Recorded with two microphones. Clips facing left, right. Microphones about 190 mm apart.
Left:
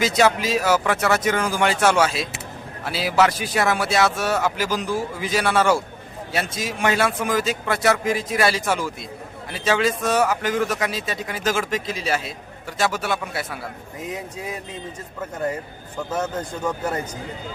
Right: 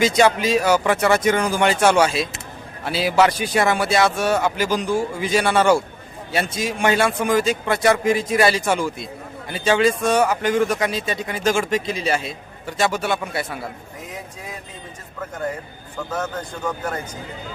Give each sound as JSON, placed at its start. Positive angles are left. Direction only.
{"t": 0.0, "sound": "a man's voice", "side_deg": 5}
{"t": 16.1, "sound": "speech", "side_deg": 20}